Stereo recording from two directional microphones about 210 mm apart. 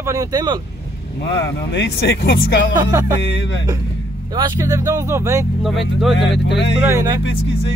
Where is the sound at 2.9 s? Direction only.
15° right (ahead or behind).